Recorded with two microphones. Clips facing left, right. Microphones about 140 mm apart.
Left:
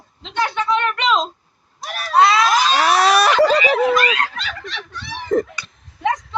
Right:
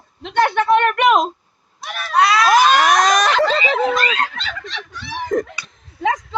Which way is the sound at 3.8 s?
30° right (ahead or behind).